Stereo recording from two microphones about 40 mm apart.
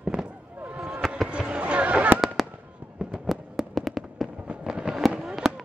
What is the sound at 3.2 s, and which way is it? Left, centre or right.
Fireworks, centre.